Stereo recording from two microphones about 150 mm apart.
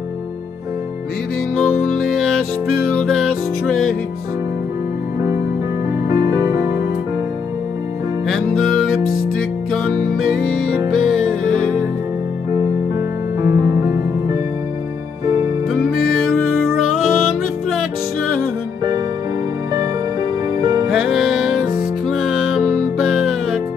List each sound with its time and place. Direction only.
2.1 s music: centre (ahead or behind)
6.0 s music: 30° right (ahead or behind)
8.3 s music: centre (ahead or behind)
13.4 s music: 25° right (ahead or behind)
16.9 s music: 5° right (ahead or behind)
20.9 s music: centre (ahead or behind)